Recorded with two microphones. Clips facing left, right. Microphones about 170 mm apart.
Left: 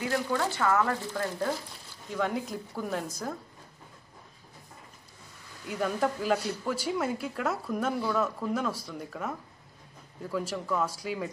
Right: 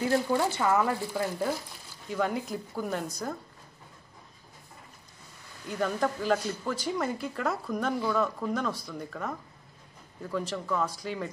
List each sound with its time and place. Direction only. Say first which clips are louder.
0.3 s speech: right 2 dB; 20° right (ahead or behind)
2.0 s a woman's voice: right 1 dB; centre (ahead or behind)
5.7 s a woman's voice: even; 5° left (ahead or behind)